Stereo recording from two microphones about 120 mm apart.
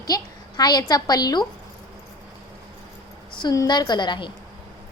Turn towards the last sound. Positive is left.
turn(degrees=40)  # may be behind; listen again after turning